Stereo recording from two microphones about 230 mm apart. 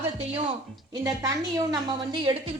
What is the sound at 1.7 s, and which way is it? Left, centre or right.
Speech, centre.